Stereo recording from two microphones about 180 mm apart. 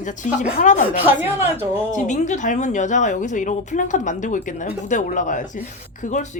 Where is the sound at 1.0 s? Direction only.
10° right (ahead or behind).